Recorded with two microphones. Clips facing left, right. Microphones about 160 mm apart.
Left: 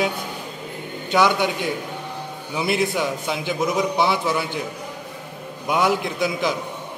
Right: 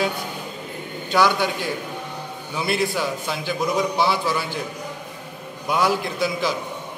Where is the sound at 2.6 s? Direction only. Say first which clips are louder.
Left 1 dB; 15° left (ahead or behind).